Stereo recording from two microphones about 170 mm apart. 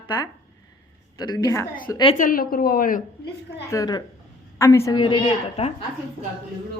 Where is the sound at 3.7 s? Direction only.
20° left (ahead or behind).